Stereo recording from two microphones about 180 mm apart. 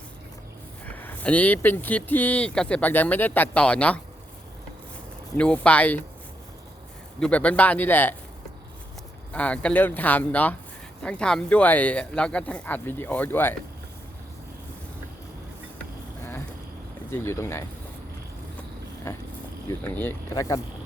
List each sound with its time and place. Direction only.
0.9 s speech: 10° left (ahead or behind)
5.4 s speech: 5° left (ahead or behind)
7.2 s speech: 5° left (ahead or behind)
9.3 s speech: 5° left (ahead or behind)
17.1 s speech: 15° left (ahead or behind)
19.1 s a sound: 15° left (ahead or behind)
19.6 s speech: 10° left (ahead or behind)